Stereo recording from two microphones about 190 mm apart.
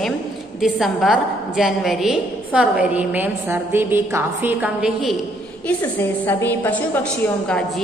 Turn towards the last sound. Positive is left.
turn(degrees=5)  # may be behind; listen again after turning